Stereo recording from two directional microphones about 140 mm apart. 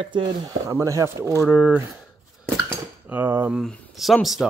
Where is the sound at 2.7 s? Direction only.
15° right (ahead or behind).